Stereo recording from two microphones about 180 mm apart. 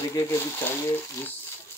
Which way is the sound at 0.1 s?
15° left (ahead or behind).